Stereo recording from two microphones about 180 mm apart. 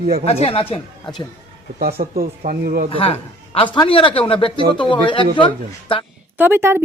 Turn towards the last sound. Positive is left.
turn(degrees=-15)  # may be behind; listen again after turning